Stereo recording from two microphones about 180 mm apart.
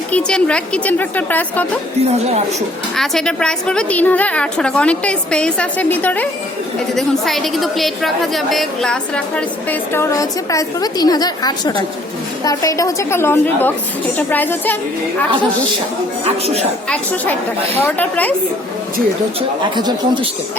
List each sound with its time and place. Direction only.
0.1 s a woman's voice: 5° left (ahead or behind)
2.0 s speech: 35° right (ahead or behind)
2.9 s a woman's voice: centre (ahead or behind)
17.8 s a woman's voice: 10° left (ahead or behind)